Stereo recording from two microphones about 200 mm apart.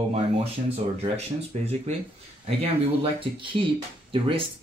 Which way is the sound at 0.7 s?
30° right (ahead or behind).